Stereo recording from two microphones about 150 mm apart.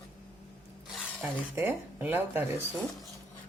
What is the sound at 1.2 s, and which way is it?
Speech, 15° right (ahead or behind).